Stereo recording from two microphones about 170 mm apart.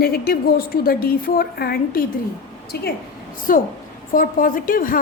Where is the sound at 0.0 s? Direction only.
60° left (ahead or behind).